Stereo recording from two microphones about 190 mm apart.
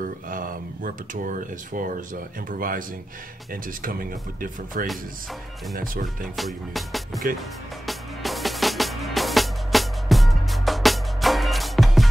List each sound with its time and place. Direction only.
0.0 s speech: 45° right (ahead or behind)
3.8 s speech: 45° right (ahead or behind)
6.3 s music: centre (ahead or behind)